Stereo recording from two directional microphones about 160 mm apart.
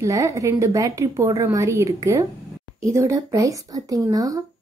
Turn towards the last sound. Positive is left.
turn(degrees=-20)  # may be behind; listen again after turning